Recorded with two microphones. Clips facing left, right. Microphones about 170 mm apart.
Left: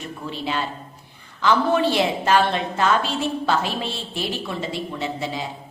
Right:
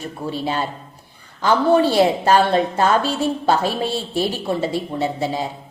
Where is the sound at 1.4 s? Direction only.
40° right (ahead or behind).